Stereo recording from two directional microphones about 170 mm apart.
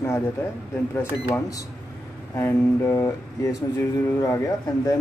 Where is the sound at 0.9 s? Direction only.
15° left (ahead or behind).